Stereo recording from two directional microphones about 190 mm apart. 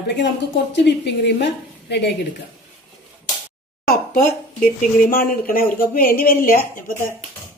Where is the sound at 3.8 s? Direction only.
50° left (ahead or behind).